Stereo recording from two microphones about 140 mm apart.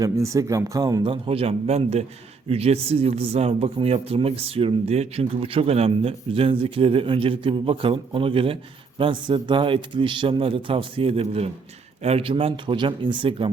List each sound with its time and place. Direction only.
0.0 s speech: 25° right (ahead or behind)
1.0 s a man's voice: 40° right (ahead or behind)